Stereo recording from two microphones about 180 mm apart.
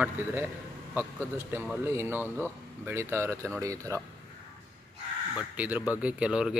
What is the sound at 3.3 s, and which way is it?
Speech, 5° left (ahead or behind).